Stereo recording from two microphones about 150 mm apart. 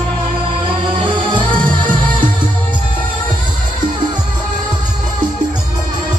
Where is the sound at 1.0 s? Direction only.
30° right (ahead or behind).